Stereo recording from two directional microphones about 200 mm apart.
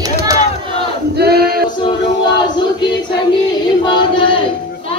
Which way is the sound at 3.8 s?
25° left (ahead or behind).